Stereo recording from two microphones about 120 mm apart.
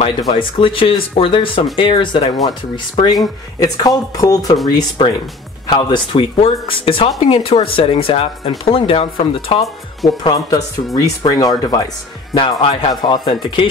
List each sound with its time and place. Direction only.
0.3 s speech: 50° left (ahead or behind)
10.0 s speech: 30° left (ahead or behind)
12.4 s speech: 50° left (ahead or behind)
13.0 s speech: 35° left (ahead or behind)